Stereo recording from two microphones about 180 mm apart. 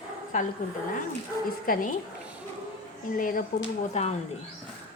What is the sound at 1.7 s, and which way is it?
Speech, 50° left (ahead or behind).